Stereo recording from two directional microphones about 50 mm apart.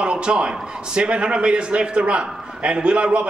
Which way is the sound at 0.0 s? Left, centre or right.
Right.